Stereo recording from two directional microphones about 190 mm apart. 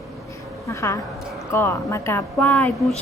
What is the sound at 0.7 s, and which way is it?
A woman's voice, 15° left (ahead or behind).